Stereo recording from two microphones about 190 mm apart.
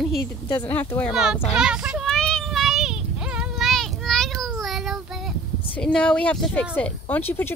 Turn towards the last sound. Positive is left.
turn(degrees=10)  # may be behind; listen again after turning